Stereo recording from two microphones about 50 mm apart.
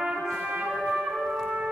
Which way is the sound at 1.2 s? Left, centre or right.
Centre.